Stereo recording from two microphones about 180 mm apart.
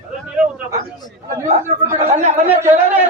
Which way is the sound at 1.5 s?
40° right (ahead or behind).